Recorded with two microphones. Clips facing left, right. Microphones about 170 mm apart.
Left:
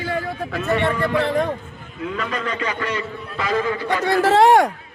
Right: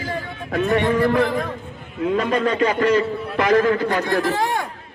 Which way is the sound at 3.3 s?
70° right (ahead or behind).